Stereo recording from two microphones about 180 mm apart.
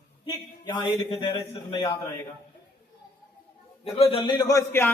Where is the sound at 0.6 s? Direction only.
25° left (ahead or behind).